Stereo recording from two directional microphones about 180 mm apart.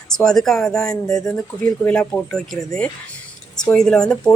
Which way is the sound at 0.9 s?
20° left (ahead or behind).